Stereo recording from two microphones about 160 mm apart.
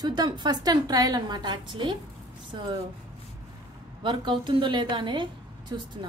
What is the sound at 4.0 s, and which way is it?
A woman's voice, 30° right (ahead or behind).